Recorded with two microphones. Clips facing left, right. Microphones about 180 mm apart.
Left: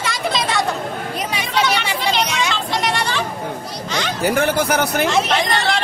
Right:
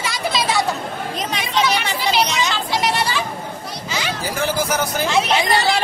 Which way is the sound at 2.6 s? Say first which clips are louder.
Even; 5° right (ahead or behind).